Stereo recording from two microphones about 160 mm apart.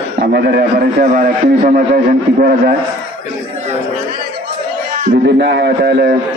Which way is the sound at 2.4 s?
65° right (ahead or behind).